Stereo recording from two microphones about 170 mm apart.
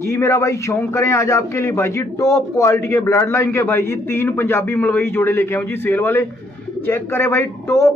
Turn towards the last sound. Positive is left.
turn(degrees=15)  # may be behind; listen again after turning